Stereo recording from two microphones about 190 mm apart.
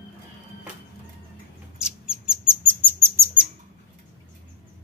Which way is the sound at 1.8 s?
5° right (ahead or behind).